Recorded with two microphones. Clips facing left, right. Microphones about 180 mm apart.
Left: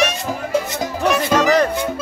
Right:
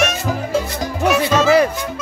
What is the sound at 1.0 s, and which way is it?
Music, 5° right (ahead or behind).